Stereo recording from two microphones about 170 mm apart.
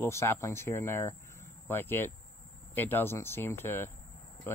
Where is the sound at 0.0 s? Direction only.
15° left (ahead or behind).